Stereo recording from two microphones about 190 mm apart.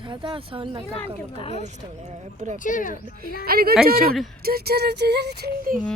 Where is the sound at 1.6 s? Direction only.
40° right (ahead or behind).